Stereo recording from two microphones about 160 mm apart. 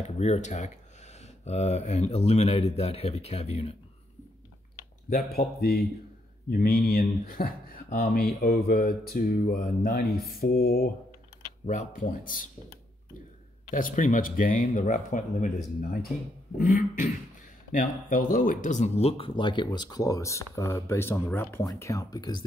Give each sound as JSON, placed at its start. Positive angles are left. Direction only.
{"t": 0.0, "sound": "speech", "side_deg": 45}
{"t": 5.1, "sound": "speech", "side_deg": 75}
{"t": 11.6, "sound": "speech", "side_deg": 55}
{"t": 13.7, "sound": "speech", "side_deg": 55}